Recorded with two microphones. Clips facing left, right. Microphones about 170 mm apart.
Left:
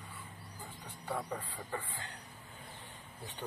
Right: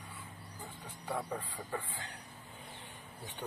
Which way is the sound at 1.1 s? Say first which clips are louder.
Right 1 dB; 10° right (ahead or behind).